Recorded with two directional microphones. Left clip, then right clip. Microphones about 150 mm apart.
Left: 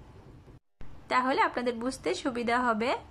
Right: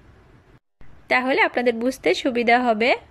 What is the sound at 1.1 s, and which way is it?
A woman's voice, 10° right (ahead or behind).